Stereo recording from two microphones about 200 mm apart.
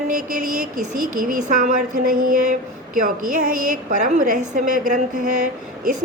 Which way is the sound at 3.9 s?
40° right (ahead or behind).